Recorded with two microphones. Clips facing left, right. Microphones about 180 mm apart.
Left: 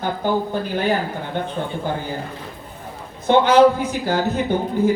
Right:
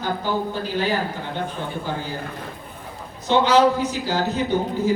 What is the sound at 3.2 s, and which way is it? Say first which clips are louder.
A man's voice: left 4 dB; 55° left (ahead or behind).